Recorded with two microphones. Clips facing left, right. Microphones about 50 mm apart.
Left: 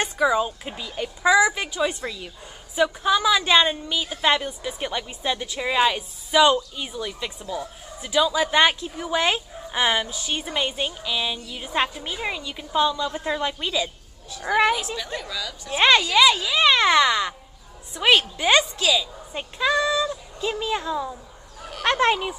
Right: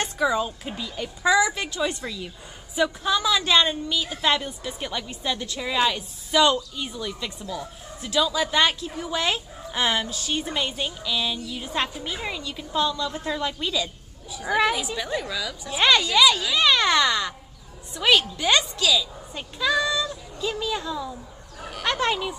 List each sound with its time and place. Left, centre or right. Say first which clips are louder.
0.0 s speech: left 2 dB; centre
15.1 s a woman's voice: right 3 dB; centre
15.7 s a child's voice: left 2 dB; left